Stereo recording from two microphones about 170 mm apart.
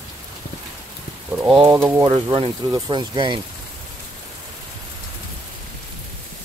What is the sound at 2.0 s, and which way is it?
Speech, 25° right (ahead or behind).